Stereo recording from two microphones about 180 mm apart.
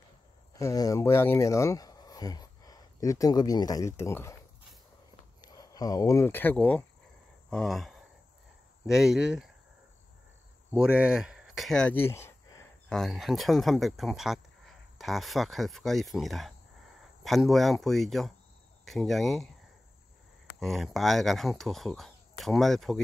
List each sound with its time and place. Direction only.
0.6 s speech: 15° left (ahead or behind)
5.4 s speech: 20° left (ahead or behind); by 9.5 s 5° right (ahead or behind)
10.7 s speech: 5° right (ahead or behind)
11.4 s a sound: centre (ahead or behind); by 12.6 s 15° left (ahead or behind)
12.9 s speech: centre (ahead or behind)
20.5 s speech: centre (ahead or behind)